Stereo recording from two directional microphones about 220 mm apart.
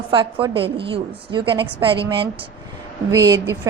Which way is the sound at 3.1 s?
15° right (ahead or behind).